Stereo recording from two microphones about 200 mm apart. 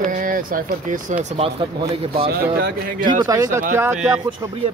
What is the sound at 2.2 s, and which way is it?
Speech, 50° right (ahead or behind).